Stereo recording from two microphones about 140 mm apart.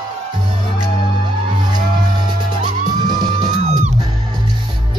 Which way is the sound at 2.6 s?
30° right (ahead or behind).